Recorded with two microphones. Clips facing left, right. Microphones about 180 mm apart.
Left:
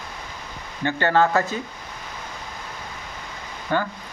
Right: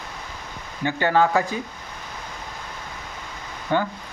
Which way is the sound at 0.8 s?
10° right (ahead or behind).